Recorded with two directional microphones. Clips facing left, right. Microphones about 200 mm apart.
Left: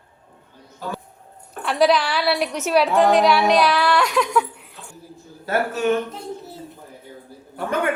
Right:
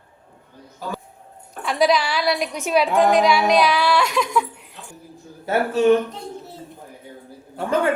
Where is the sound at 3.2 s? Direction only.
10° right (ahead or behind).